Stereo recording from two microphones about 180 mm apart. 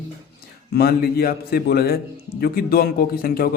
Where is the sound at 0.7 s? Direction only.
60° left (ahead or behind).